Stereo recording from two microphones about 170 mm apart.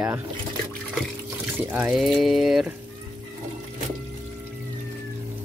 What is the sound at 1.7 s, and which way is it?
Speech, 5° right (ahead or behind).